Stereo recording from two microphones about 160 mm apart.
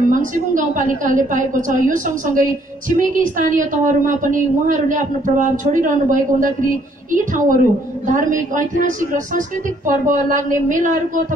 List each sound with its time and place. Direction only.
0.1 s a woman's voice: 55° right (ahead or behind)